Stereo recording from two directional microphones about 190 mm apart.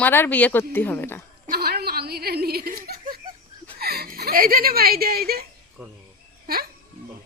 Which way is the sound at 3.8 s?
55° right (ahead or behind).